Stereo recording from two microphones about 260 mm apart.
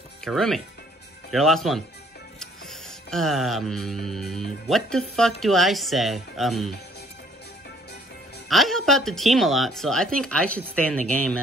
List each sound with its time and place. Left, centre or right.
0.2 s speech: centre
1.3 s music: centre
8.5 s music: centre